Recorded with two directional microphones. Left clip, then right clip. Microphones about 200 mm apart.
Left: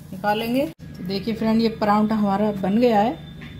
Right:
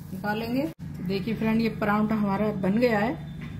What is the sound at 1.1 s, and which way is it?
A woman's voice, 35° left (ahead or behind).